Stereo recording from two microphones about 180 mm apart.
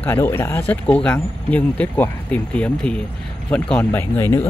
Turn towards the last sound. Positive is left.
turn(degrees=15)  # may be behind; listen again after turning